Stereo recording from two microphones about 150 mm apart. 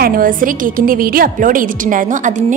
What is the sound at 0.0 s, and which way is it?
A woman's voice, 70° right (ahead or behind).